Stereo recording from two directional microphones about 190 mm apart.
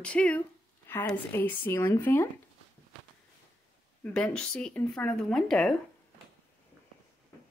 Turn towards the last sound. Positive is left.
turn(degrees=0)  # may be behind; listen again after turning